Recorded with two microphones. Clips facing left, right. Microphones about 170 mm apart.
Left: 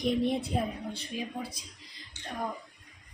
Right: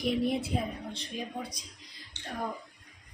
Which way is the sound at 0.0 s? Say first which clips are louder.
Left 1 dB; 5° right (ahead or behind).